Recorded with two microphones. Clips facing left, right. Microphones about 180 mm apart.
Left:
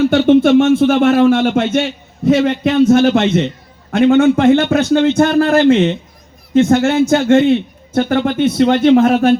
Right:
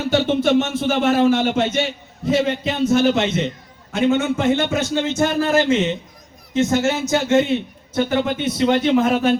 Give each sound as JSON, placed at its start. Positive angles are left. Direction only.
{"t": 0.0, "sound": "a man's voice", "side_deg": 55}